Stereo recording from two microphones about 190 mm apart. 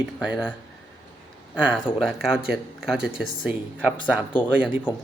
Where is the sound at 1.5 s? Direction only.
5° right (ahead or behind).